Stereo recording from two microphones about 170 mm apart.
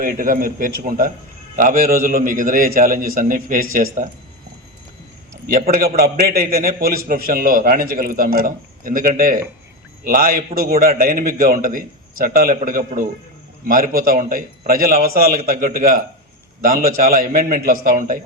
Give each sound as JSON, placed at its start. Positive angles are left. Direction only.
{"t": 0.0, "sound": "a man's voice", "side_deg": -55}
{"t": 5.5, "sound": "a man's voice", "side_deg": -55}